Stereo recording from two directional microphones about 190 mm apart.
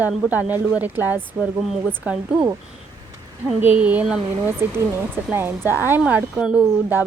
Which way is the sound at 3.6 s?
10° right (ahead or behind).